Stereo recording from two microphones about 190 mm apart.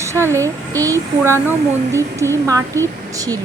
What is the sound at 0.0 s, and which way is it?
Speech, 15° right (ahead or behind).